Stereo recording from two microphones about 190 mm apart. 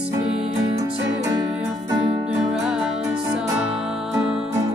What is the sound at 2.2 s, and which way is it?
Music, centre (ahead or behind).